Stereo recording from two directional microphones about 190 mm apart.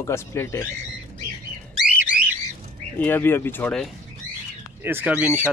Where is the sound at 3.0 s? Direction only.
10° left (ahead or behind).